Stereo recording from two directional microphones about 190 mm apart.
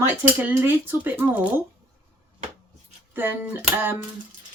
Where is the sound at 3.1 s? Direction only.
10° right (ahead or behind).